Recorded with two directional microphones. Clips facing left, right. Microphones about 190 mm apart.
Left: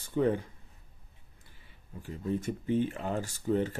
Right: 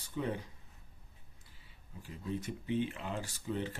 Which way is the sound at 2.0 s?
50° left (ahead or behind).